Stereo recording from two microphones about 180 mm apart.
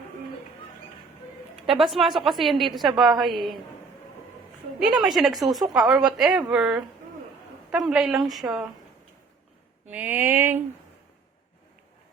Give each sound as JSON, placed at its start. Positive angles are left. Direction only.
{"t": 1.6, "sound": "a woman's voice", "side_deg": 0}
{"t": 4.8, "sound": "a woman's voice", "side_deg": -5}
{"t": 9.9, "sound": "a sound", "side_deg": -10}